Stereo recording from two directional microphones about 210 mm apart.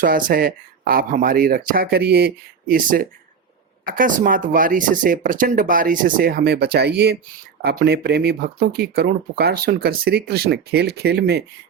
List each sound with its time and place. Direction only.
0.0 s speech: 40° right (ahead or behind)